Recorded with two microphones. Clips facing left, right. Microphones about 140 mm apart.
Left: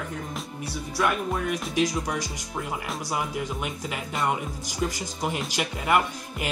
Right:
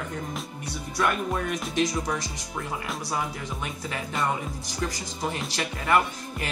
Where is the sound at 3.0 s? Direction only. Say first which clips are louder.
Left 3 dB; 10° left (ahead or behind).